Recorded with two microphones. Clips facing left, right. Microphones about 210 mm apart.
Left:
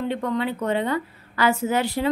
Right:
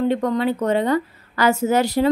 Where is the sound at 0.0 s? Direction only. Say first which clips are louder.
Right 5 dB; 40° right (ahead or behind).